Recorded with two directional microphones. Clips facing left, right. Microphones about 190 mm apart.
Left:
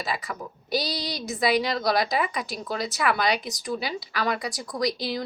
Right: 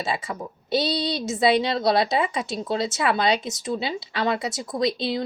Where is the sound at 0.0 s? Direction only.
25° right (ahead or behind).